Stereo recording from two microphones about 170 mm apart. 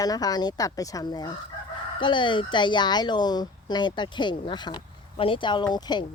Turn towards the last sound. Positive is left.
turn(degrees=25)  # may be behind; listen again after turning